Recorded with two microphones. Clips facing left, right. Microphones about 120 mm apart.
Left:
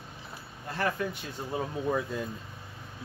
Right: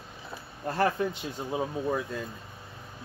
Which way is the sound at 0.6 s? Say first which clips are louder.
Right 5 dB; 35° right (ahead or behind).